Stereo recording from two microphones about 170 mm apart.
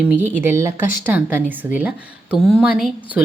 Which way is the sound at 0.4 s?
15° right (ahead or behind).